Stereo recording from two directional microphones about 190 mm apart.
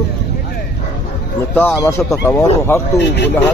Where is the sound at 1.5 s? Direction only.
10° left (ahead or behind).